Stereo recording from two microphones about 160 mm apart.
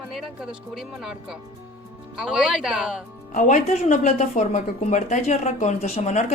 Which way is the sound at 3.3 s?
50° left (ahead or behind).